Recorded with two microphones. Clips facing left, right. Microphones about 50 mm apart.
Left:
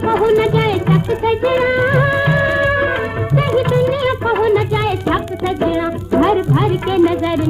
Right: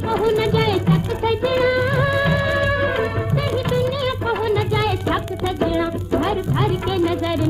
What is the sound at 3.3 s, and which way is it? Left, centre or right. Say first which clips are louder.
Music: left 8 dB; left.